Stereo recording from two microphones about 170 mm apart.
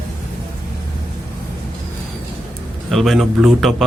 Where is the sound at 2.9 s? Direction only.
Centre (ahead or behind).